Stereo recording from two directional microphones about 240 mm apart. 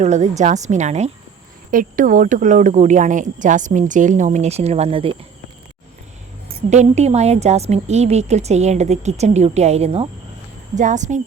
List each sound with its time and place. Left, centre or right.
0.0 s a woman's voice: right
6.7 s a woman's voice: right